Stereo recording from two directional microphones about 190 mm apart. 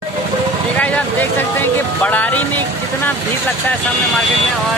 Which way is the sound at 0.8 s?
10° left (ahead or behind).